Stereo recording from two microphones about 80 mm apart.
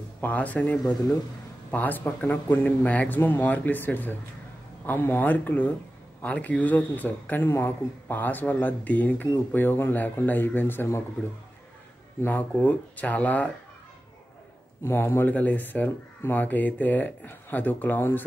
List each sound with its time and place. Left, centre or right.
0.2 s speech: centre
12.3 s speech: centre
14.8 s speech: left